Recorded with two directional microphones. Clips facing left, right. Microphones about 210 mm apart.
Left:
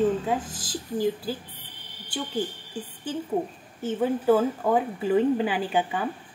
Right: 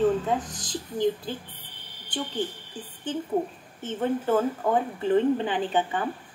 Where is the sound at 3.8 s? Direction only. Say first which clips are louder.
Left 4 dB; 5° left (ahead or behind).